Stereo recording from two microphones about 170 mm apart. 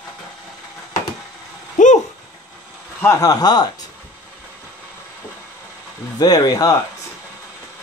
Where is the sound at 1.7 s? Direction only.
45° left (ahead or behind).